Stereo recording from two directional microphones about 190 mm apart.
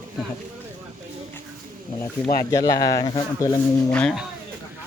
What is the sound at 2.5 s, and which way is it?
Speech, 20° left (ahead or behind).